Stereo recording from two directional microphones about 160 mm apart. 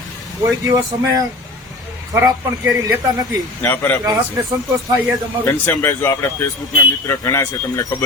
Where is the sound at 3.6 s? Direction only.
10° left (ahead or behind).